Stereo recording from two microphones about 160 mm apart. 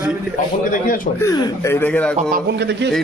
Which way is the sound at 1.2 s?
25° left (ahead or behind).